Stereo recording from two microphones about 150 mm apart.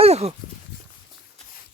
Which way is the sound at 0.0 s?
45° right (ahead or behind).